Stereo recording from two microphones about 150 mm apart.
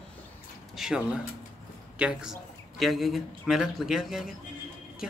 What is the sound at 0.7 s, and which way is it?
A man's voice, 5° right (ahead or behind).